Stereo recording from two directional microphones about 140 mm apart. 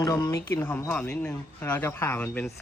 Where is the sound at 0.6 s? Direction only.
10° left (ahead or behind).